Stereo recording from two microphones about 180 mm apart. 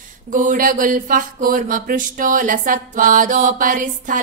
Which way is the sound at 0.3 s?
50° right (ahead or behind).